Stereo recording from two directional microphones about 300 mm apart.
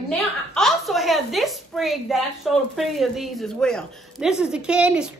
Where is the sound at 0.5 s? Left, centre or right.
Centre.